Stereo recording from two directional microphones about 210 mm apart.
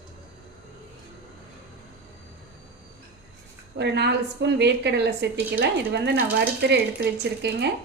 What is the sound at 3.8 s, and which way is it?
A woman's voice, 55° right (ahead or behind).